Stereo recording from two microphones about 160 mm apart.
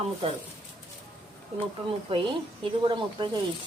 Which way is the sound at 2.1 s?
35° right (ahead or behind).